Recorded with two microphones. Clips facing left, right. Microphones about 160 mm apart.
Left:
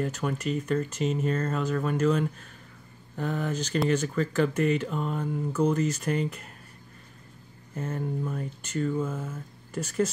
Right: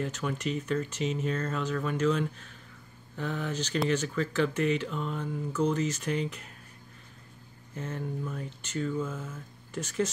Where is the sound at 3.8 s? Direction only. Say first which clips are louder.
Left 3 dB; 5° left (ahead or behind).